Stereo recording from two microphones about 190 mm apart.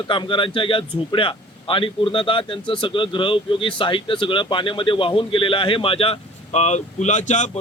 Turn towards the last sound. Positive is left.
turn(degrees=40)  # may be behind; listen again after turning